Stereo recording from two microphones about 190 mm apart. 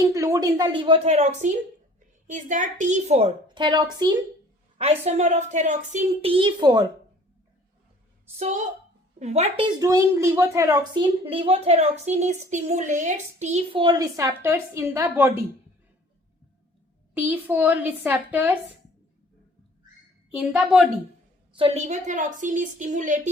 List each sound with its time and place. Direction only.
0.1 s a woman's voice: 15° right (ahead or behind); by 3.2 s 40° right (ahead or behind)
3.5 s a woman's voice: 25° right (ahead or behind)
4.8 s a woman's voice: 35° right (ahead or behind)
8.4 s a woman's voice: 35° right (ahead or behind)
9.8 s a woman's voice: 15° right (ahead or behind); by 13.8 s 35° right (ahead or behind)
13.8 s a woman's voice: 20° right (ahead or behind)
17.2 s a woman's voice: 10° right (ahead or behind)
20.3 s a woman's voice: 5° right (ahead or behind)
21.5 s a woman's voice: 30° right (ahead or behind)